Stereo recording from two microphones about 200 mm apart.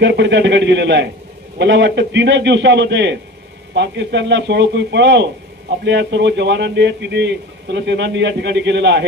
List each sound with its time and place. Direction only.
0.0 s a man's voice: 60° right (ahead or behind)